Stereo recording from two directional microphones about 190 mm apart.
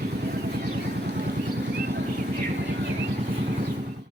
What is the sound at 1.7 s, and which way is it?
Vehicle, 55° right (ahead or behind).